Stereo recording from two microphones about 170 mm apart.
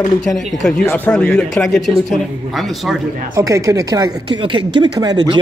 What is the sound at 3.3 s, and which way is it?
Speech, 20° right (ahead or behind).